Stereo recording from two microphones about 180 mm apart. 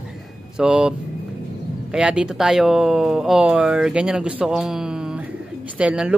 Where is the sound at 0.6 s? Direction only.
5° right (ahead or behind).